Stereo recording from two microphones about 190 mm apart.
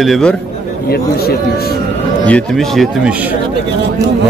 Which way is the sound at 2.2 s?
5° left (ahead or behind).